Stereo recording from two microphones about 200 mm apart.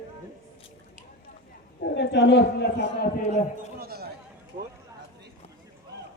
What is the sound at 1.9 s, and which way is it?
Speech, 60° left (ahead or behind).